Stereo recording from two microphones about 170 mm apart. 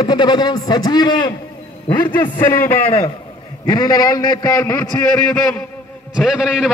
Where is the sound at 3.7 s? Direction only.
25° left (ahead or behind); by 5.6 s 10° left (ahead or behind).